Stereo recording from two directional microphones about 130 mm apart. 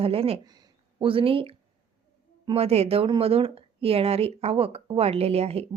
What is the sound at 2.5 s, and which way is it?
Speech, 50° right (ahead or behind).